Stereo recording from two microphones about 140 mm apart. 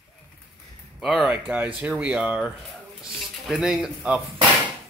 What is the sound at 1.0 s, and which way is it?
Speech, 5° right (ahead or behind).